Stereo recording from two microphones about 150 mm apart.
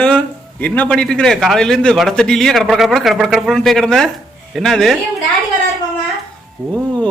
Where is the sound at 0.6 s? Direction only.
10° left (ahead or behind).